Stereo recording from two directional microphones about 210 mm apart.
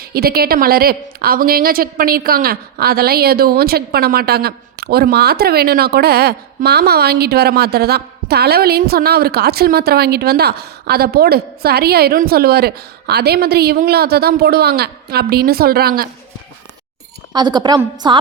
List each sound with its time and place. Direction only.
0.0 s a woman's voice: 45° right (ahead or behind)
17.3 s a woman's voice: 20° right (ahead or behind)